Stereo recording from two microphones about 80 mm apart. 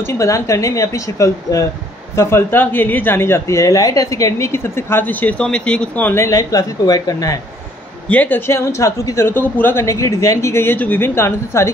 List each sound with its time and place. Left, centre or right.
0.0 s a woman's voice: left
2.1 s a woman's voice: left
5.4 s speech: centre
6.1 s speech: left
8.1 s speech: left
8.5 s a woman's voice: left
9.8 s a woman's voice: left
11.1 s a woman's voice: left